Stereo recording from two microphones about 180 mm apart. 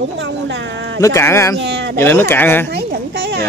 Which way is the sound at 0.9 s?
15° left (ahead or behind).